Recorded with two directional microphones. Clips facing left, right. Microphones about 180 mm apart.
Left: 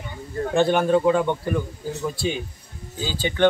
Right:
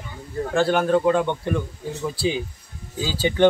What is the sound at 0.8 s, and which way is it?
Speech, 10° left (ahead or behind).